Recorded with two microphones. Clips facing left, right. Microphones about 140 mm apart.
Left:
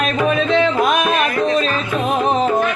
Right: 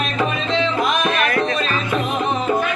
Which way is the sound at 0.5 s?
50° left (ahead or behind).